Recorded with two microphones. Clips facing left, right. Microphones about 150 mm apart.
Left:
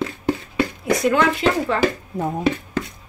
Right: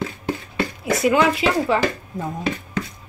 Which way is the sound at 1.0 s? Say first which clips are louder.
Right 1 dB; 5° right (ahead or behind).